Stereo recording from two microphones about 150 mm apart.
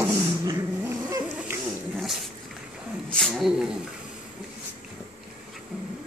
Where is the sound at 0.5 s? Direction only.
20° right (ahead or behind).